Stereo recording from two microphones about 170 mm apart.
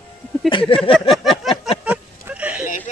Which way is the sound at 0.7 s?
30° left (ahead or behind).